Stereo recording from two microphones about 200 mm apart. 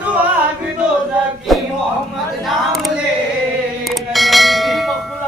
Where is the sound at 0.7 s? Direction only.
5° right (ahead or behind).